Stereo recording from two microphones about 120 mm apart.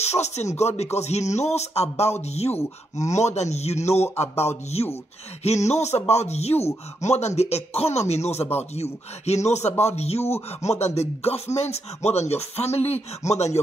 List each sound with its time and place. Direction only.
0.0 s a man's voice: 65° left (ahead or behind)
5.4 s a man's voice: 65° left (ahead or behind)